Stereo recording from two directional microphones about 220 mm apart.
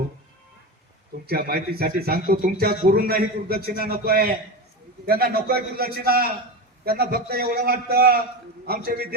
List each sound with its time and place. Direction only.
1.3 s speech: 45° right (ahead or behind)